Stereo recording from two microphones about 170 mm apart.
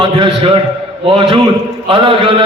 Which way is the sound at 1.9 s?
30° right (ahead or behind).